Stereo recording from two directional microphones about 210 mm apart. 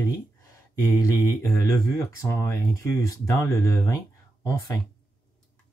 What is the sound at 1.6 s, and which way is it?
Speech, 15° left (ahead or behind).